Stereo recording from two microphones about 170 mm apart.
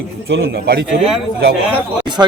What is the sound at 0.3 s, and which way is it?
Speech, 70° right (ahead or behind).